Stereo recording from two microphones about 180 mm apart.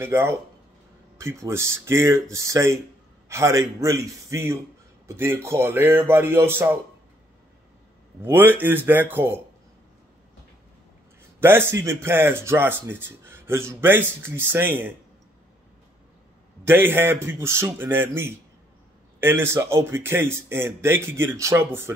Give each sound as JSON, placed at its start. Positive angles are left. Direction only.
{"t": 0.0, "sound": "speech", "side_deg": -15}
{"t": 8.2, "sound": "speech", "side_deg": -10}
{"t": 11.3, "sound": "speech", "side_deg": -10}
{"t": 16.6, "sound": "speech", "side_deg": -10}